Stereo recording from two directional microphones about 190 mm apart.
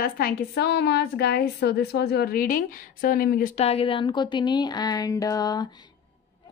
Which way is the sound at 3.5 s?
30° left (ahead or behind).